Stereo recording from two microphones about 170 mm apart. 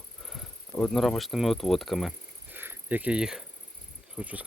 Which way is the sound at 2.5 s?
10° right (ahead or behind).